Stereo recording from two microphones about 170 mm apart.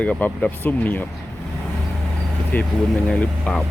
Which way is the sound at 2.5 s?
10° left (ahead or behind).